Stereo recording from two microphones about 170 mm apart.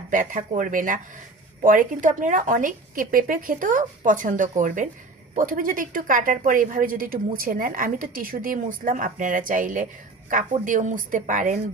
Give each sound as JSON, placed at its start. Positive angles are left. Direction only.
{"t": 0.1, "sound": "a woman's voice", "side_deg": -50}